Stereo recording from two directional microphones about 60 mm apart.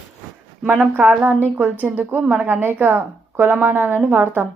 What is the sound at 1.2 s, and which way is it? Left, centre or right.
A woman's voice, right.